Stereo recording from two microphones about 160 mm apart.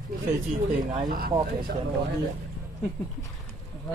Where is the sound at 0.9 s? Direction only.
60° right (ahead or behind).